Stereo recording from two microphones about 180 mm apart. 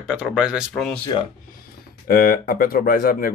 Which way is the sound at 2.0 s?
55° left (ahead or behind).